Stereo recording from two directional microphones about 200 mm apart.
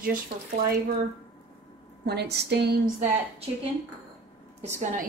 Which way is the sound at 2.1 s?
55° right (ahead or behind).